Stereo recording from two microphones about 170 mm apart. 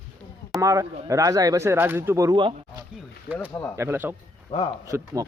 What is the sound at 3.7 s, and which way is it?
Speech, 15° right (ahead or behind).